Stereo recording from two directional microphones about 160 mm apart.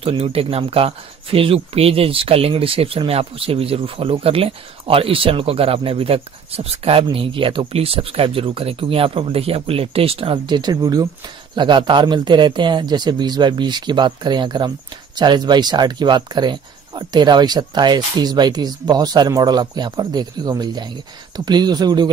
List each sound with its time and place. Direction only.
0.0 s speech: 35° right (ahead or behind)